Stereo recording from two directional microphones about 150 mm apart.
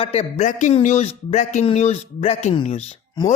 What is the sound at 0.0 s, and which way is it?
Speech, 45° left (ahead or behind).